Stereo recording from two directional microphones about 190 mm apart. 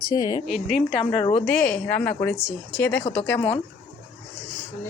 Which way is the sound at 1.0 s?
25° left (ahead or behind).